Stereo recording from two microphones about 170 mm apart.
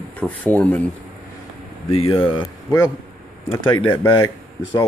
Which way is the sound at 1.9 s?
35° left (ahead or behind).